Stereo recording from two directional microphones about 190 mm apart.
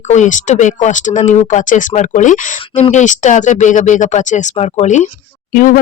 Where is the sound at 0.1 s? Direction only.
40° left (ahead or behind).